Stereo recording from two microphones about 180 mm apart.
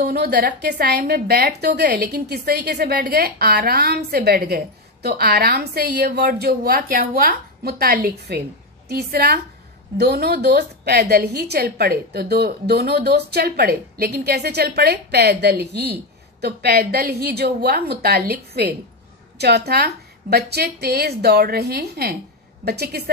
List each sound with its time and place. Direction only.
0.0 s a woman's voice: 65° right (ahead or behind)